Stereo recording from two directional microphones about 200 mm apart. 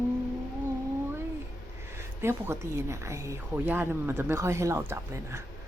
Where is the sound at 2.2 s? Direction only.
15° right (ahead or behind).